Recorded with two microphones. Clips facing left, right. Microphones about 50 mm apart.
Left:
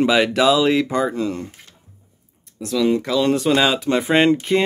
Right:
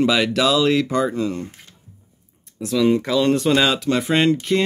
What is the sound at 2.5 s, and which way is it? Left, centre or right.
Speech, centre.